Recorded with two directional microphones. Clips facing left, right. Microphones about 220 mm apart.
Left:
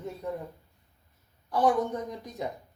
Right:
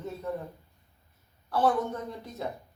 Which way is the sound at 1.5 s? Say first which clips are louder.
Left 1 dB; 15° left (ahead or behind).